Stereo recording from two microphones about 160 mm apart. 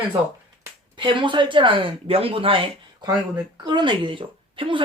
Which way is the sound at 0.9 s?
30° right (ahead or behind).